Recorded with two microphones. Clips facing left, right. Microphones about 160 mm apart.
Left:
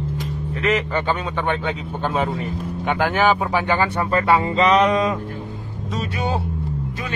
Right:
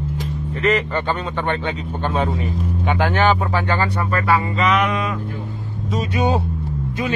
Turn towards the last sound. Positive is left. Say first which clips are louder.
# right 5 dB
turn(degrees=-20)  # may be behind; listen again after turning